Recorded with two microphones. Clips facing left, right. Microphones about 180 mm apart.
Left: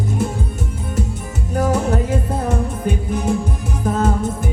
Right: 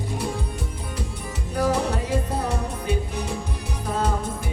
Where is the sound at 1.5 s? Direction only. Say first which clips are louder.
Left 4 dB; 50° left (ahead or behind).